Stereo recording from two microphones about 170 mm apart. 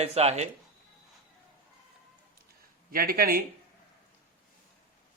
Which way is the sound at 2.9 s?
60° right (ahead or behind).